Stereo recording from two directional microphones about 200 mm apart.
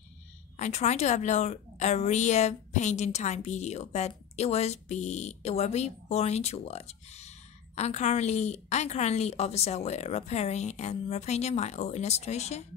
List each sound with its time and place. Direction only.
0.6 s a woman's voice: 35° left (ahead or behind)